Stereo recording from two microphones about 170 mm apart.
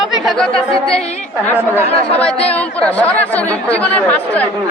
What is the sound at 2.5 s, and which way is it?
Speech, 10° left (ahead or behind).